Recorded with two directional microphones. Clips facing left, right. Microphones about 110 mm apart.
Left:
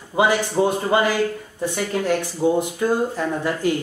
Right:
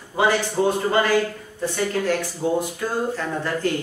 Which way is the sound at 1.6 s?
15° left (ahead or behind).